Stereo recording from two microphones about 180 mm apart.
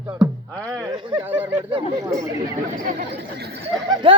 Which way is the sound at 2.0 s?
15° right (ahead or behind).